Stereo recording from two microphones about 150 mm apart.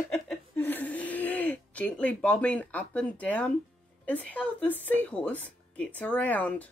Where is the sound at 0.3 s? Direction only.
10° left (ahead or behind).